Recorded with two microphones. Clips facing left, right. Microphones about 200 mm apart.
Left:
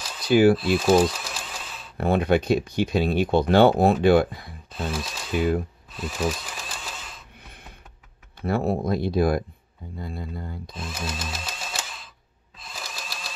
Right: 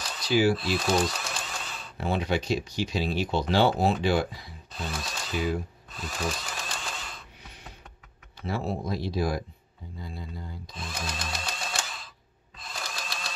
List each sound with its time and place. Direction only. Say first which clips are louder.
0.2 s speech: left 6 dB; 55° left (ahead or behind)
0.7 s typewriter: left 7 dB; 5° left (ahead or behind)
2.0 s speech: left 7 dB; 55° left (ahead or behind)
4.9 s speech: left 5 dB; centre (ahead or behind)
5.9 s a sound: left 6 dB; 5° left (ahead or behind)
8.4 s speech: left 7 dB; 55° left (ahead or behind)
10.7 s a sound: left 2 dB; 5° left (ahead or behind)